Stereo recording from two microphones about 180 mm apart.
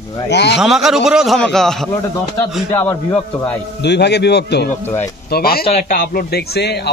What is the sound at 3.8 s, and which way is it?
A man's voice, 70° left (ahead or behind).